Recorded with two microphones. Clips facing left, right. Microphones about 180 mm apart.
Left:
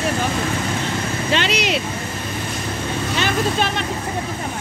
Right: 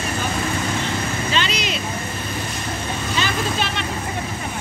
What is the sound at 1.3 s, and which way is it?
Vehicle, 70° left (ahead or behind).